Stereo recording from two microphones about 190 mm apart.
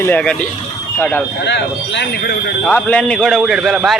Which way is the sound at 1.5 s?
65° left (ahead or behind).